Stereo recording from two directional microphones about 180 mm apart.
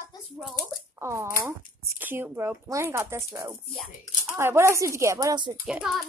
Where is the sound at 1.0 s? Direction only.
15° right (ahead or behind).